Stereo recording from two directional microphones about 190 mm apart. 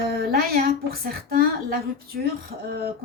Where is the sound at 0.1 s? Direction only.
50° right (ahead or behind).